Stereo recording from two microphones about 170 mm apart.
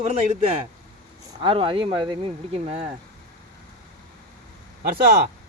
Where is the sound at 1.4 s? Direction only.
30° right (ahead or behind).